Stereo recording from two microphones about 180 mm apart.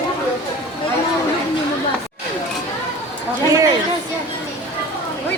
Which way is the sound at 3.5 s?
20° right (ahead or behind).